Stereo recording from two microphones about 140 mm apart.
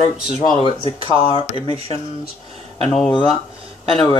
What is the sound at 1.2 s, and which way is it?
Speech, 40° left (ahead or behind).